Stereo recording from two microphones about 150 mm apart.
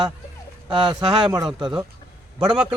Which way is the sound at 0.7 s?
30° right (ahead or behind).